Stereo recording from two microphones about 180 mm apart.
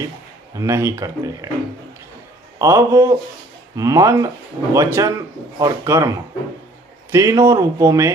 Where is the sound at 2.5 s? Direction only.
15° right (ahead or behind).